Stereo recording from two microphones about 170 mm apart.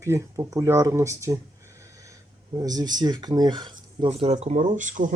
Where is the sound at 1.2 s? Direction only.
15° right (ahead or behind).